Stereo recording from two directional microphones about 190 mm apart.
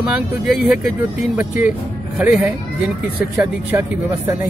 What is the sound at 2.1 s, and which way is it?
Speech, 10° right (ahead or behind).